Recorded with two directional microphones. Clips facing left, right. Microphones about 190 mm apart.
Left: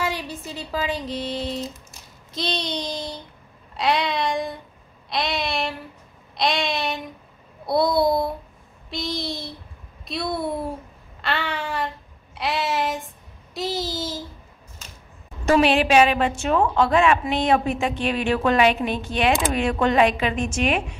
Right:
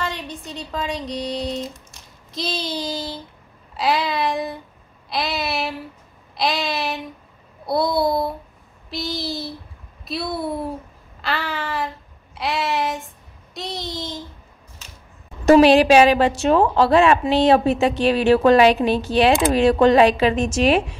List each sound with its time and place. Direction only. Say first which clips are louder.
0.0 s speech: left 1 dB; 5° left (ahead or behind)
2.3 s child singing: right 1 dB; centre (ahead or behind)
15.4 s a woman's voice: right 6 dB; 40° right (ahead or behind)